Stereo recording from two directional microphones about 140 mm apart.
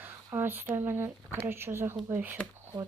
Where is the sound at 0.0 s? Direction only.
15° right (ahead or behind).